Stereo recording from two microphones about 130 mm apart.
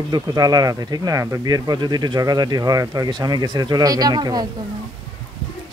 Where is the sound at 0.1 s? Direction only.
30° right (ahead or behind).